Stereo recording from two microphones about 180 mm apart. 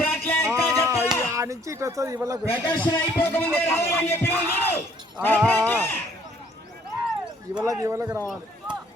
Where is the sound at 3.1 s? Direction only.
10° left (ahead or behind).